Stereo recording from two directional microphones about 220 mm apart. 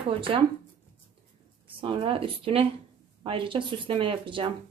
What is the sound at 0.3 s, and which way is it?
Speech, 25° right (ahead or behind).